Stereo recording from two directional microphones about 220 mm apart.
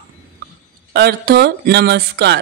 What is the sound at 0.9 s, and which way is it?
A man's voice, 45° right (ahead or behind).